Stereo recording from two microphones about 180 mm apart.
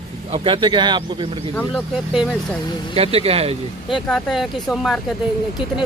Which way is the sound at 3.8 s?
Centre (ahead or behind).